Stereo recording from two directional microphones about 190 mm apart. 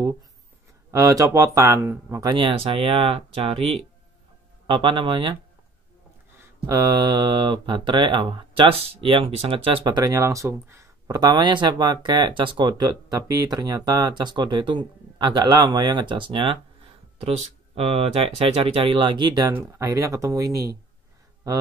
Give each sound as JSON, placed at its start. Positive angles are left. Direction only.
{"t": 0.9, "sound": "speech", "side_deg": -15}
{"t": 6.3, "sound": "speech", "side_deg": -10}